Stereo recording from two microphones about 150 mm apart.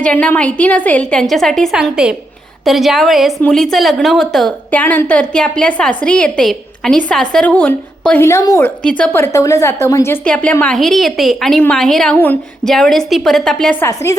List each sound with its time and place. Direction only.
0.0 s a woman's voice: 10° left (ahead or behind)
8.8 s a woman's voice: 10° left (ahead or behind)
12.1 s a woman's voice: 10° left (ahead or behind)
13.8 s a woman's voice: 20° left (ahead or behind)